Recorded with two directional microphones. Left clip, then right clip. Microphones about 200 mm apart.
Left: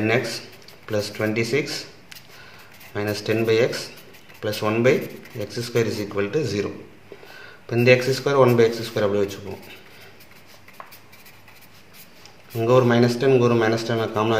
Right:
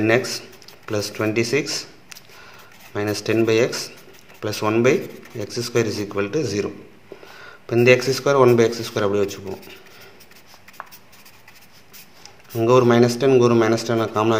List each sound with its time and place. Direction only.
0.0 s speech: 30° right (ahead or behind)
12.5 s speech: 30° right (ahead or behind)